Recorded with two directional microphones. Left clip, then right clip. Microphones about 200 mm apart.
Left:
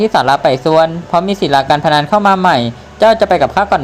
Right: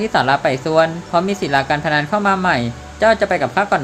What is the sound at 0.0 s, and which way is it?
Speech, 20° left (ahead or behind).